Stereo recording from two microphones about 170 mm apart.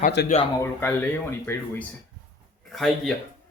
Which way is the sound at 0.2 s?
75° left (ahead or behind).